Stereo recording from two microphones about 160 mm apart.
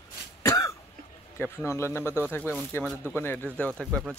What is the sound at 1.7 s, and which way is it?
Speech, 15° left (ahead or behind).